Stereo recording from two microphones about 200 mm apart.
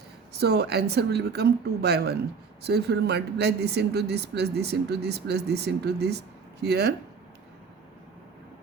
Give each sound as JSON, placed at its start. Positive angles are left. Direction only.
{"t": 0.3, "sound": "a woman's voice", "side_deg": -55}